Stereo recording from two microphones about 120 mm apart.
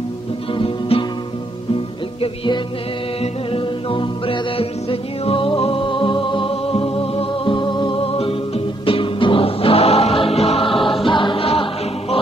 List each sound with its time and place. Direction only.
0.6 s music: 50° left (ahead or behind)
3.2 s music: 45° left (ahead or behind)